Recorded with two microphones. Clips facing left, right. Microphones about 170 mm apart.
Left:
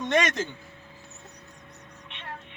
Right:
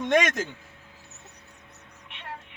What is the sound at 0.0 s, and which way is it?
Speech, 15° right (ahead or behind).